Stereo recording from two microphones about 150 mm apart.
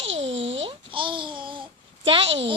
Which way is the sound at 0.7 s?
35° right (ahead or behind).